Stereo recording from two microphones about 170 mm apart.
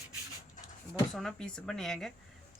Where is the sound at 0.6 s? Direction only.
50° left (ahead or behind).